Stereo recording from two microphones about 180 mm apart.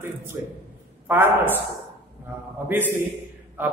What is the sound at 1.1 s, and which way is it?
Speech, 10° right (ahead or behind).